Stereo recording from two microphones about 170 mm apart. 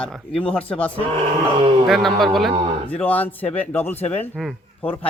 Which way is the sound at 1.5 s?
35° right (ahead or behind).